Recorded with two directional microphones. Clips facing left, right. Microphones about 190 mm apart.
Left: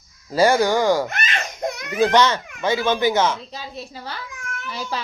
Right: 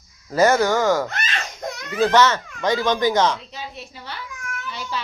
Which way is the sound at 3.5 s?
40° left (ahead or behind).